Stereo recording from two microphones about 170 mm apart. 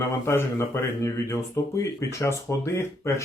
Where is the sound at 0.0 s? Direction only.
15° left (ahead or behind).